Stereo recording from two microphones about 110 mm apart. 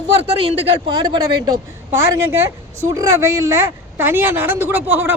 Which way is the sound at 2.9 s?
25° right (ahead or behind).